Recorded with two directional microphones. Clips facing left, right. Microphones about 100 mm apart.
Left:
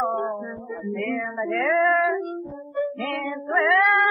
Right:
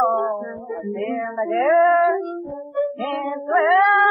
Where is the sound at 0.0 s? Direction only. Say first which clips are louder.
Right 6 dB; 30° right (ahead or behind).